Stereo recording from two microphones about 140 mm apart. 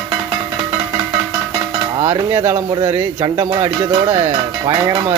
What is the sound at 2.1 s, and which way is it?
Speech, 15° right (ahead or behind).